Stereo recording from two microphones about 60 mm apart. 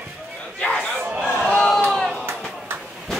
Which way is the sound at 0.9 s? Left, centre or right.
Right.